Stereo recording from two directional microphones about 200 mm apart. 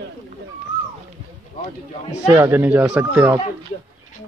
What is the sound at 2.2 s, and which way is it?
Speech, 15° right (ahead or behind).